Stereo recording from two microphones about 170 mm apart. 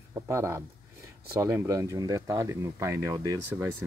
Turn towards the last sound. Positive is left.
turn(degrees=-15)  # may be behind; listen again after turning